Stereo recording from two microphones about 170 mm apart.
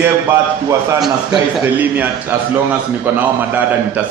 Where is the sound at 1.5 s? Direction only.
10° right (ahead or behind).